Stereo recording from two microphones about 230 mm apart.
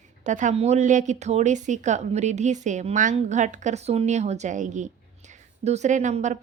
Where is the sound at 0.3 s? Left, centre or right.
Right.